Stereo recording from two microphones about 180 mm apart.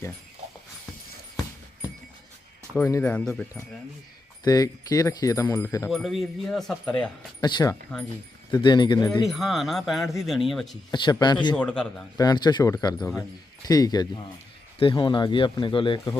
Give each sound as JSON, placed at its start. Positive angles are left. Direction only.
{"t": 2.7, "sound": "speech", "side_deg": 10}
{"t": 4.4, "sound": "speech", "side_deg": 20}
{"t": 5.9, "sound": "speech", "side_deg": 0}
{"t": 7.4, "sound": "speech", "side_deg": 20}
{"t": 9.2, "sound": "speech", "side_deg": 0}
{"t": 10.9, "sound": "speech", "side_deg": 25}
{"t": 11.5, "sound": "speech", "side_deg": 5}
{"t": 12.1, "sound": "speech", "side_deg": 20}
{"t": 13.0, "sound": "speech", "side_deg": 0}
{"t": 13.7, "sound": "speech", "side_deg": 20}